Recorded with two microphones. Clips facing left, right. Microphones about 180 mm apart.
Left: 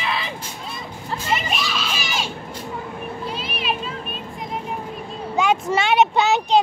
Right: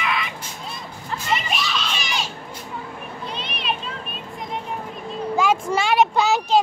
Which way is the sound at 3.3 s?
5° left (ahead or behind).